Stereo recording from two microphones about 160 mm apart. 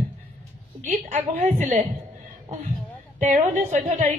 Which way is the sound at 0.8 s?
45° right (ahead or behind).